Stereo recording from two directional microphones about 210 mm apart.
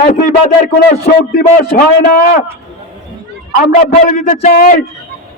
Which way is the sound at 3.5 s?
35° left (ahead or behind).